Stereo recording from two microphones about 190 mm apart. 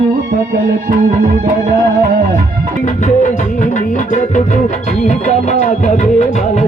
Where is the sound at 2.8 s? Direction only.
40° left (ahead or behind).